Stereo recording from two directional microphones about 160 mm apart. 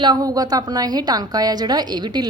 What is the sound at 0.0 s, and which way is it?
A woman's voice, 25° right (ahead or behind).